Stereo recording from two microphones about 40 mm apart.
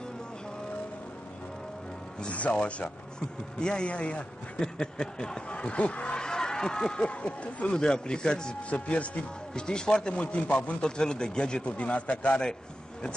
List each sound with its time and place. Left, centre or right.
2.3 s a man's voice: left
4.7 s a man's voice: centre
6.2 s speech: centre
7.7 s a man's voice: left
8.6 s speech: left
9.5 s a man's voice: centre
10.2 s speech: left
10.8 s a man's voice: left